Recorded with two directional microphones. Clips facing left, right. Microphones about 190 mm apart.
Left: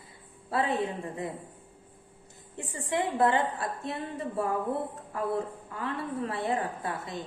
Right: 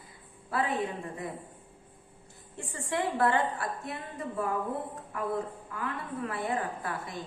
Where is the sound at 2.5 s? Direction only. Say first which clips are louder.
Left 2 dB; 20° left (ahead or behind).